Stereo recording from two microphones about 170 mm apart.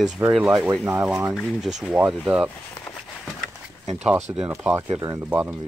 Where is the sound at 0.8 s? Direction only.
10° right (ahead or behind).